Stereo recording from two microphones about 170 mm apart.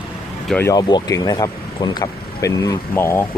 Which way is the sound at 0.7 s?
20° left (ahead or behind).